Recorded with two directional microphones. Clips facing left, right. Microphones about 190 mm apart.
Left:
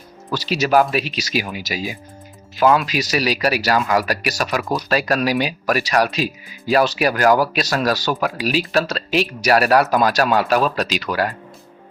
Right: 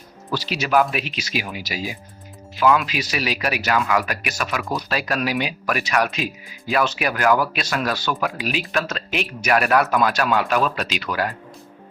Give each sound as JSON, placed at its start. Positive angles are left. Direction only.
{"t": 0.3, "sound": "speech", "side_deg": 40}